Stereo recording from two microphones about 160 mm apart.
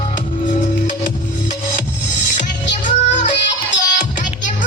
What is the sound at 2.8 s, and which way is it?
Music, 50° left (ahead or behind).